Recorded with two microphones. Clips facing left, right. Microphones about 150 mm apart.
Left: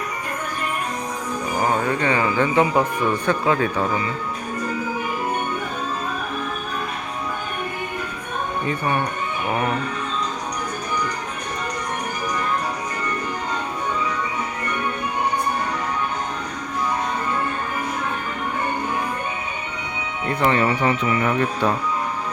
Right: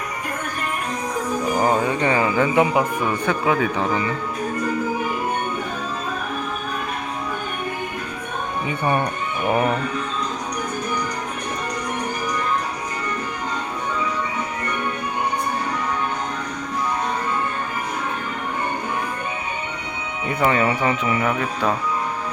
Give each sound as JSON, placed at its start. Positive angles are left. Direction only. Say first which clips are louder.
{"t": 1.6, "sound": "speech", "louder": "even", "side_deg": -15}
{"t": 20.4, "sound": "speech", "louder": "even", "side_deg": -5}